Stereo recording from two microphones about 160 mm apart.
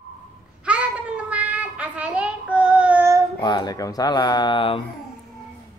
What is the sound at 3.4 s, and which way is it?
Speech, 25° left (ahead or behind).